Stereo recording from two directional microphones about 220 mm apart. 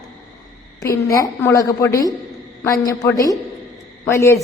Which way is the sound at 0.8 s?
15° left (ahead or behind).